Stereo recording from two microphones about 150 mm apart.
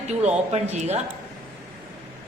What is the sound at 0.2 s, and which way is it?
Speech, 45° right (ahead or behind).